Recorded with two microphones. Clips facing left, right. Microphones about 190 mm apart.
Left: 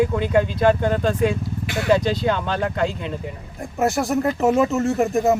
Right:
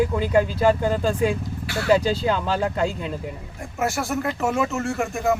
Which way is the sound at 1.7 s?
20° left (ahead or behind).